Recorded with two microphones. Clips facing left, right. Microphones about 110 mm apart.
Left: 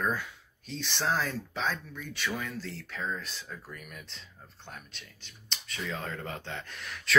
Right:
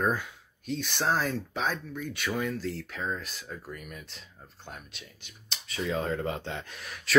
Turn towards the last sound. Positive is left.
turn(degrees=-15)  # may be behind; listen again after turning